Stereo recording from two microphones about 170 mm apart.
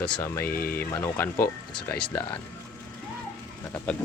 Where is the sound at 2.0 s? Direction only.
30° left (ahead or behind).